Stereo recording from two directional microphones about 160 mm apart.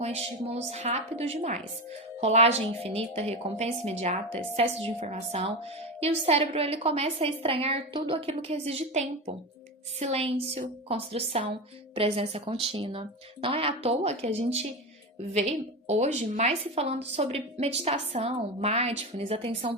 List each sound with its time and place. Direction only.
0.0 s a woman's voice: 40° right (ahead or behind)
15.9 s a woman's voice: 45° right (ahead or behind)